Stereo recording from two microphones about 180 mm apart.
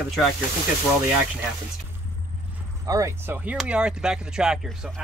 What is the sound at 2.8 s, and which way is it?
Speech, 15° right (ahead or behind).